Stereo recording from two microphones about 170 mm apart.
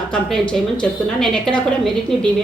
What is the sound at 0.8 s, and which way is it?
Speech, 5° left (ahead or behind).